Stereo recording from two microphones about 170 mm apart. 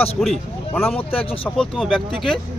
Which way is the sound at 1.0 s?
35° left (ahead or behind).